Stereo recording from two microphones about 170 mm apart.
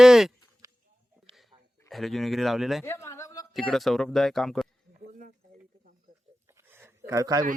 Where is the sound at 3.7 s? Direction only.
Centre (ahead or behind).